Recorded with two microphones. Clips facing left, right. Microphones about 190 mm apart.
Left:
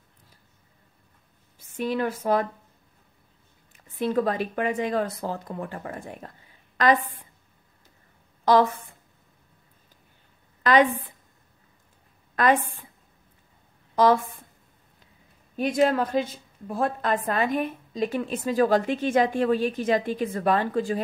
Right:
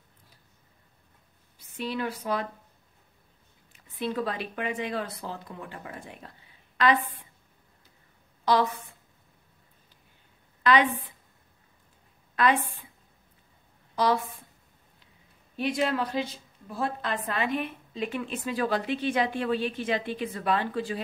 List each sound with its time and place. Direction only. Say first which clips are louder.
1.6 s a woman's voice: left 5 dB; 45° left (ahead or behind)
3.7 s a woman's voice: left 6 dB; 45° left (ahead or behind)
8.5 s a woman's voice: left 5 dB; 50° left (ahead or behind)
10.6 s a woman's voice: left 3 dB; 45° left (ahead or behind)
12.4 s a woman's voice: left 3 dB; 45° left (ahead or behind)
13.9 s a woman's voice: left 6 dB; 50° left (ahead or behind)
15.5 s a woman's voice: left 5 dB; 45° left (ahead or behind)